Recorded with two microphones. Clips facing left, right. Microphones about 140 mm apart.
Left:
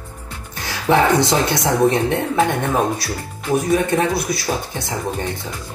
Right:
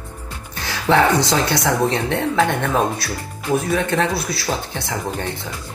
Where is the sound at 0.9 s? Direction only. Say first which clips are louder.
Left 1 dB; 15° left (ahead or behind).